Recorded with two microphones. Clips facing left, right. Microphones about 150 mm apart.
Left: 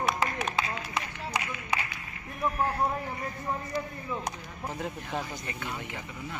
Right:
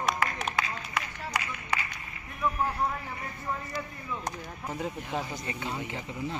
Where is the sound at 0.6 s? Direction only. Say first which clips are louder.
Left 1 dB; 20° left (ahead or behind).